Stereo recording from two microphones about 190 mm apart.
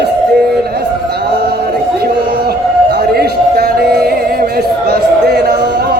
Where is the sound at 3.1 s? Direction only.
55° right (ahead or behind).